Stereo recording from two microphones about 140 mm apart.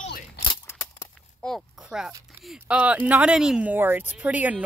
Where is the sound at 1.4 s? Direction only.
Centre (ahead or behind).